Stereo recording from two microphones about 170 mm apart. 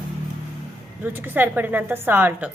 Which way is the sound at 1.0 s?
10° right (ahead or behind).